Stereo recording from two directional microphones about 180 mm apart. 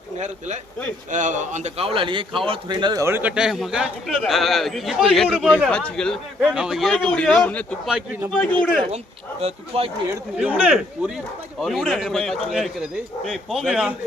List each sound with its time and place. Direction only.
0.2 s a man's voice: 40° right (ahead or behind); by 7.8 s 5° left (ahead or behind)
7.9 s speech: 10° right (ahead or behind)
8.5 s a man's voice: 25° right (ahead or behind)
10.3 s a man's voice: 5° right (ahead or behind)